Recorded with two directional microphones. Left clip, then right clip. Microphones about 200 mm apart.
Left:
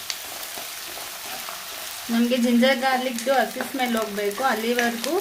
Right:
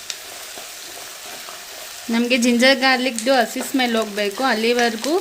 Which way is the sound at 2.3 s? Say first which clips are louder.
Right 5 dB; 45° right (ahead or behind).